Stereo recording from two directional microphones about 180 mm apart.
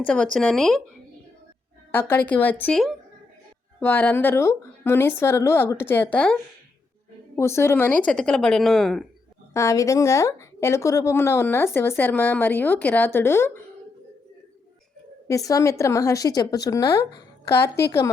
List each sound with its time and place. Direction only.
0.0 s speech: 5° left (ahead or behind)
1.9 s speech: 10° left (ahead or behind)
7.3 s speech: 15° left (ahead or behind)
9.5 s speech: 15° left (ahead or behind)
15.3 s a woman's voice: 20° left (ahead or behind)